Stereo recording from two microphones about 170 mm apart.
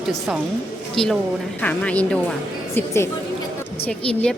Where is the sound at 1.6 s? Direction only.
10° left (ahead or behind).